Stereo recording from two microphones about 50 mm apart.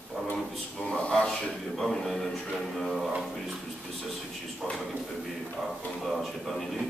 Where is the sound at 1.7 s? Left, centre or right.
Centre.